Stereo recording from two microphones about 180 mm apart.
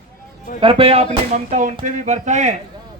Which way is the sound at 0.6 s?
30° right (ahead or behind).